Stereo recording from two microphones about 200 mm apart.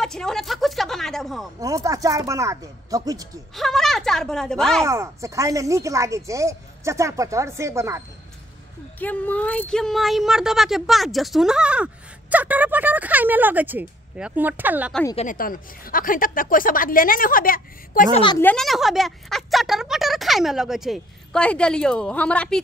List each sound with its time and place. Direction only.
0.0 s speech: centre (ahead or behind)
1.6 s speech: 15° right (ahead or behind)
3.5 s speech: centre (ahead or behind)
4.8 s speech: 15° right (ahead or behind)
9.0 s speech: 10° left (ahead or behind); by 15.0 s 10° right (ahead or behind)
15.1 s speech: 45° left (ahead or behind)
18.4 s speech: 5° left (ahead or behind)